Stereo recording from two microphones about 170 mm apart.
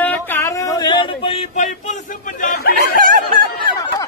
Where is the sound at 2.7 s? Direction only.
55° right (ahead or behind).